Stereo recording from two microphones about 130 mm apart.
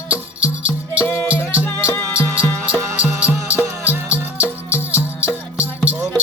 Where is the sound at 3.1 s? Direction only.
10° right (ahead or behind).